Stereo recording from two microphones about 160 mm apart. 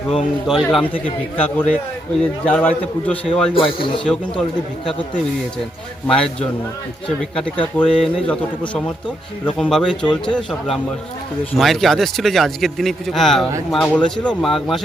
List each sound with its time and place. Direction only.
0.4 s a man's voice: centre (ahead or behind)
0.9 s a man's voice: 10° left (ahead or behind)
3.5 s speech: 35° left (ahead or behind)
6.1 s a man's voice: 5° left (ahead or behind)